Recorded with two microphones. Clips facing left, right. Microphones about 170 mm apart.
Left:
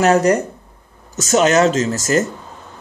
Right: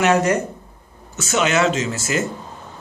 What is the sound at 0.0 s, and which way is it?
Speech, 40° left (ahead or behind).